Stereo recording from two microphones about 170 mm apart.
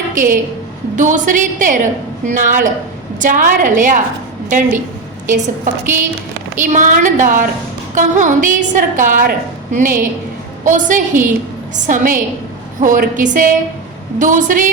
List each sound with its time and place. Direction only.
0.1 s a woman's voice: 50° right (ahead or behind)
6.7 s a woman's voice: 50° right (ahead or behind)